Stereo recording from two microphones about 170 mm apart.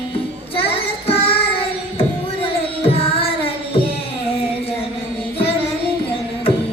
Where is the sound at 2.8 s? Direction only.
35° left (ahead or behind).